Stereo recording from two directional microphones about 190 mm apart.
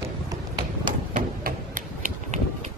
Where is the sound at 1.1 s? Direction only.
45° right (ahead or behind).